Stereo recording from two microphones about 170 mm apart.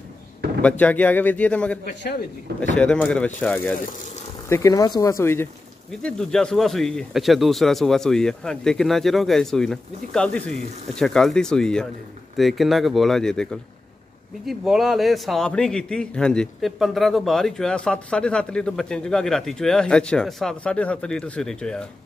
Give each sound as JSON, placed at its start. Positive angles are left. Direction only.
{"t": 0.6, "sound": "speech", "side_deg": 10}
{"t": 2.8, "sound": "a man's voice", "side_deg": 5}